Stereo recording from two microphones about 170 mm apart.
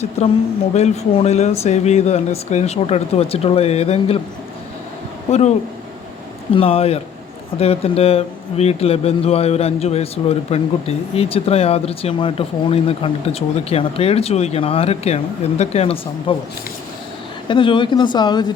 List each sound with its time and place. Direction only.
0.2 s a man's voice: 40° left (ahead or behind)
6.5 s a man's voice: 35° left (ahead or behind)
17.5 s speech: 30° left (ahead or behind)